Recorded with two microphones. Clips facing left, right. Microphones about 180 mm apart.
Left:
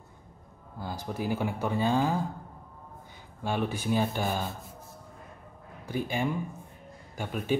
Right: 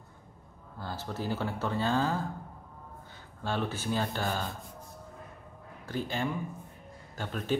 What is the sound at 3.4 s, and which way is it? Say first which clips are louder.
Speech: left 3 dB; 15° left (ahead or behind).